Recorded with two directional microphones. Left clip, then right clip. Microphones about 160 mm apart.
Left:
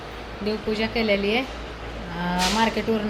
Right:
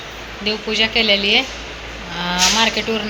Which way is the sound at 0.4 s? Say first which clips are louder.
Right 8 dB; 10° left (ahead or behind).